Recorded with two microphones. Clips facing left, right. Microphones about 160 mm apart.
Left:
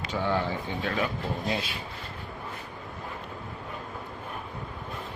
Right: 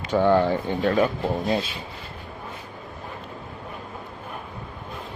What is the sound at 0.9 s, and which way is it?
Speech, 40° right (ahead or behind).